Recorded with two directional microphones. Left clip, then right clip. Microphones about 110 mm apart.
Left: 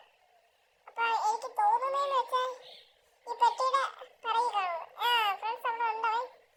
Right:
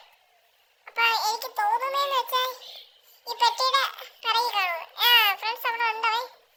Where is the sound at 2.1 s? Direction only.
65° right (ahead or behind).